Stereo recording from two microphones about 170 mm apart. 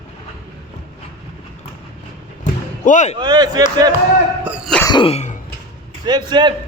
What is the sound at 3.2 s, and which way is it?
Speech, 25° right (ahead or behind).